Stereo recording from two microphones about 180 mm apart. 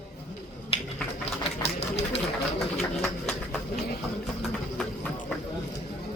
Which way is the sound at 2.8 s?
5° left (ahead or behind).